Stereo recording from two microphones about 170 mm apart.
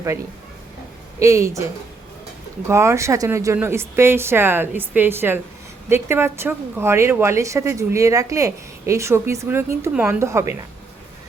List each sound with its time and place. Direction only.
1.2 s a woman's voice: 20° right (ahead or behind)
2.6 s a woman's voice: 15° right (ahead or behind)